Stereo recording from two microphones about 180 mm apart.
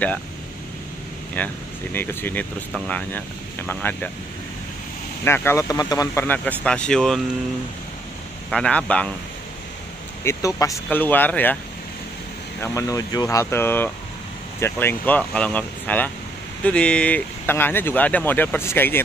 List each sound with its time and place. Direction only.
1.4 s speech: 10° left (ahead or behind)
5.2 s speech: 10° left (ahead or behind)
8.5 s speech: 5° left (ahead or behind)
10.2 s speech: 15° left (ahead or behind)
12.6 s speech: 20° left (ahead or behind)